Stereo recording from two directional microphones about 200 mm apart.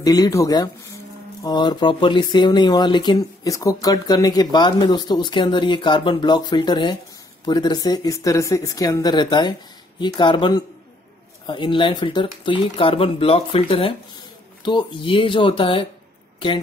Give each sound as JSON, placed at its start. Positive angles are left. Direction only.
{"t": 0.0, "sound": "speech", "side_deg": 20}